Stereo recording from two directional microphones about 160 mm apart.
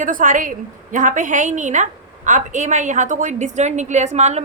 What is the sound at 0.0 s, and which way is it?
A woman's voice, 55° right (ahead or behind).